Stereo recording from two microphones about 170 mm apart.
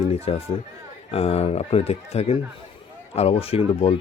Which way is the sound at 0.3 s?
35° left (ahead or behind).